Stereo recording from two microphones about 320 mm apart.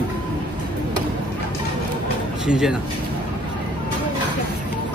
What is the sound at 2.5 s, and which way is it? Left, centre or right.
Speech, centre.